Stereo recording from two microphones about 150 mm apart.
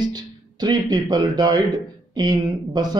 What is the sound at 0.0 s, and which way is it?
Speech, 25° right (ahead or behind).